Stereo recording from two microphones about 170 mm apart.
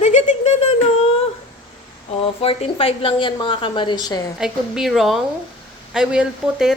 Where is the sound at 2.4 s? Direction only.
35° left (ahead or behind).